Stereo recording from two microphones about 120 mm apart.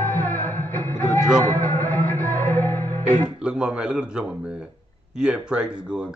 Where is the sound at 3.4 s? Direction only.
5° right (ahead or behind).